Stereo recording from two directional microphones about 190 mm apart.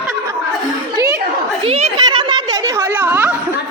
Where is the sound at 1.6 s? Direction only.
30° right (ahead or behind); by 3.3 s 10° right (ahead or behind).